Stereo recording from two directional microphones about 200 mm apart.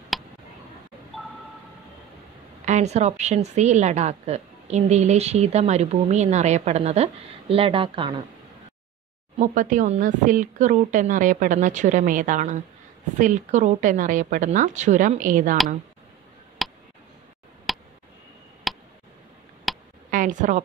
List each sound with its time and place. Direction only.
0.1 s tick: centre (ahead or behind)
2.6 s a woman's voice: 35° right (ahead or behind)
9.4 s a woman's voice: 40° right (ahead or behind)
16.6 s a sound: centre (ahead or behind)
20.1 s a woman's voice: 40° right (ahead or behind)